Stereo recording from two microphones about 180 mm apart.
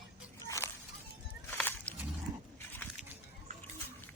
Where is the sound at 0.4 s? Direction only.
15° left (ahead or behind).